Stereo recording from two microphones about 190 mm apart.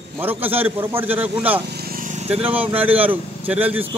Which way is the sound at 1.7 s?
55° right (ahead or behind).